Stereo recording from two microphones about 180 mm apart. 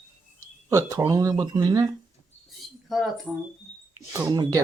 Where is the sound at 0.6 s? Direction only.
15° right (ahead or behind).